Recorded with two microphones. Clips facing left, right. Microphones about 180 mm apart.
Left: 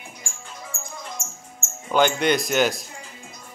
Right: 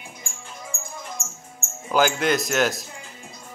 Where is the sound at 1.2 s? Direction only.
25° right (ahead or behind).